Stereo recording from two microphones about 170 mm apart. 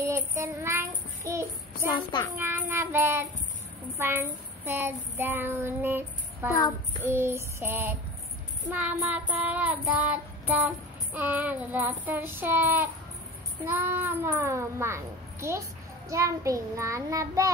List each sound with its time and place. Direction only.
0.0 s child singing: 15° right (ahead or behind)
6.5 s music: 25° left (ahead or behind)
7.2 s child singing: 15° right (ahead or behind)